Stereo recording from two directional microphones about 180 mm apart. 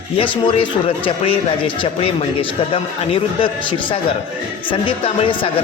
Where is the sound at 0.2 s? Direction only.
30° left (ahead or behind).